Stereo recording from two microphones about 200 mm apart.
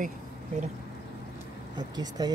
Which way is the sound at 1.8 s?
20° right (ahead or behind).